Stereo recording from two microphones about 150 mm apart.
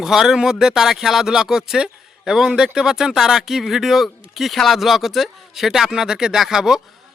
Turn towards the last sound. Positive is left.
turn(degrees=-5)  # may be behind; listen again after turning